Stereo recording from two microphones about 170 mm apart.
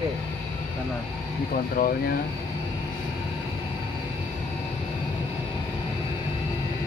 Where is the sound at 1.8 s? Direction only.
55° left (ahead or behind).